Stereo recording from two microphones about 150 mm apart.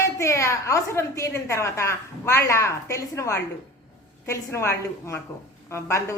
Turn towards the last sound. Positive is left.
turn(degrees=20)  # may be behind; listen again after turning